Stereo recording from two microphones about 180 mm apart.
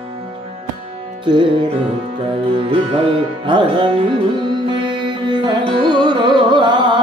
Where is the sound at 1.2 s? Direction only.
25° right (ahead or behind).